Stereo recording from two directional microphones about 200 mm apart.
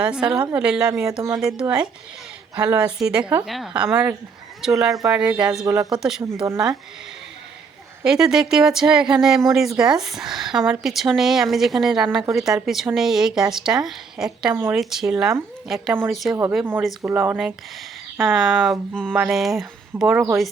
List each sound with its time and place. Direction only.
0.0 s speech: 5° right (ahead or behind)
2.6 s speech: 5° right (ahead or behind)
5.6 s speech: 15° right (ahead or behind)
5.9 s speech: centre (ahead or behind)
8.0 s speech: 5° right (ahead or behind)